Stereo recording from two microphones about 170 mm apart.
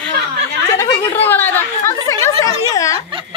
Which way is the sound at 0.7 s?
10° left (ahead or behind).